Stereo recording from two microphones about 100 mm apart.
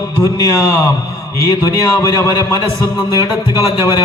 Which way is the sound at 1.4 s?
35° left (ahead or behind).